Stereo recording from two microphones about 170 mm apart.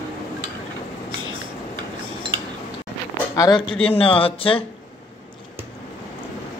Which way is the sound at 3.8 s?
35° left (ahead or behind).